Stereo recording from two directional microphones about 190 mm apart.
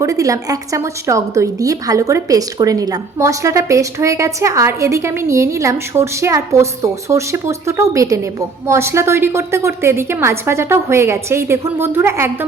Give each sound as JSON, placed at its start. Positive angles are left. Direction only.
{"t": 0.0, "sound": "a woman's voice", "side_deg": -15}